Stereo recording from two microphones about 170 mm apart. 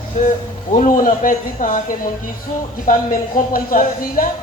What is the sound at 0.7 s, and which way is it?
Speech, 50° left (ahead or behind).